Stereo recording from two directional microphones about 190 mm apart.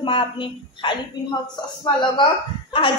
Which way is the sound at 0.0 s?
25° left (ahead or behind).